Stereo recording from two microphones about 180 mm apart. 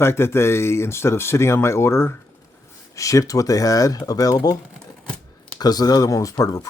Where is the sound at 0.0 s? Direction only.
15° left (ahead or behind).